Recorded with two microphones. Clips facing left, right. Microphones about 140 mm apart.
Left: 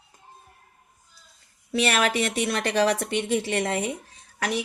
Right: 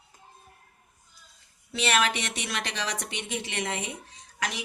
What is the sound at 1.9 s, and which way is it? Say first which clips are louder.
Speech: even; 50° left (ahead or behind).